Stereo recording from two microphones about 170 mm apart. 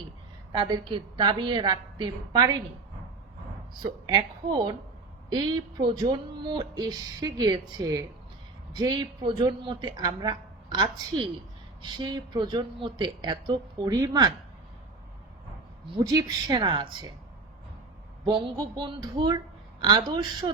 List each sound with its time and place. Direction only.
0.7 s speech: 30° right (ahead or behind)
4.0 s speech: 25° right (ahead or behind)
15.9 s speech: 20° right (ahead or behind)
18.3 s speech: 30° right (ahead or behind)